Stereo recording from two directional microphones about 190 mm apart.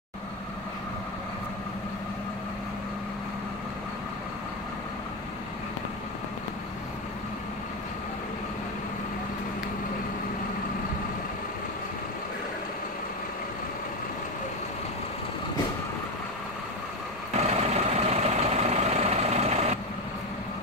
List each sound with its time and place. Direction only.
17.4 s vehicle: 35° right (ahead or behind)